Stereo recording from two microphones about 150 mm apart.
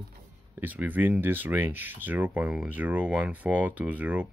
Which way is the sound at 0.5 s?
10° right (ahead or behind).